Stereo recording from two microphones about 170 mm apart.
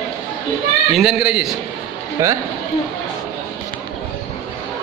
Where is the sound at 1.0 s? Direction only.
5° right (ahead or behind).